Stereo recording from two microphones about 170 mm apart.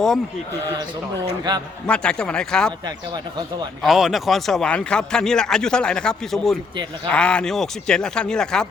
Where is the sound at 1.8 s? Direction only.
5° left (ahead or behind).